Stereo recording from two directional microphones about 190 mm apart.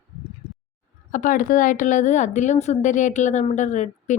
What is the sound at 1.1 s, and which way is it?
A woman's voice, 45° left (ahead or behind).